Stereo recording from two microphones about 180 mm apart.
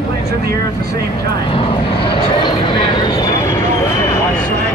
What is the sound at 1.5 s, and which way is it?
Speech, 30° left (ahead or behind).